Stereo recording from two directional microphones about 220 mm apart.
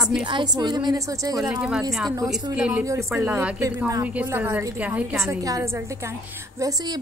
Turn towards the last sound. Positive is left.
turn(degrees=-15)  # may be behind; listen again after turning